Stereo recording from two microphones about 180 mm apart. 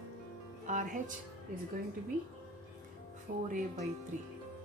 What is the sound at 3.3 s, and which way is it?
Speech, 55° right (ahead or behind).